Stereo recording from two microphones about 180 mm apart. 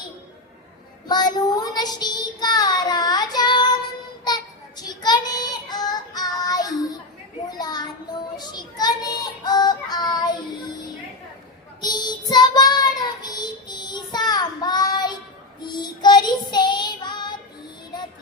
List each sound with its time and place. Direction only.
1.0 s child singing: 25° left (ahead or behind)
11.8 s child singing: 25° left (ahead or behind)